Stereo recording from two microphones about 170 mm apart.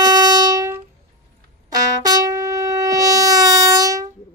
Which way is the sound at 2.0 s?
20° right (ahead or behind).